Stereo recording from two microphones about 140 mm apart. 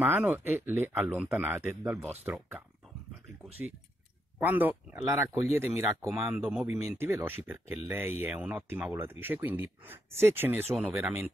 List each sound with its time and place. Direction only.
0.0 s speech: 15° right (ahead or behind)